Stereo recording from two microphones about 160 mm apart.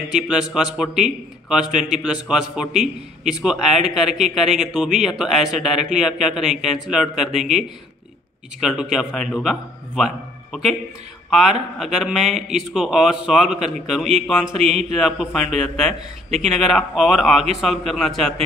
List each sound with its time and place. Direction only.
0.1 s a man's voice: 5° right (ahead or behind)
1.7 s speech: 50° right (ahead or behind)
2.0 s a man's voice: 5° right (ahead or behind)
8.5 s a man's voice: 5° right (ahead or behind)
14.6 s speech: 45° right (ahead or behind)
15.0 s a man's voice: centre (ahead or behind)
16.4 s a man's voice: centre (ahead or behind)